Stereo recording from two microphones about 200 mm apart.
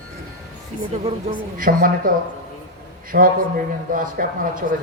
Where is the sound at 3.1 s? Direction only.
50° right (ahead or behind).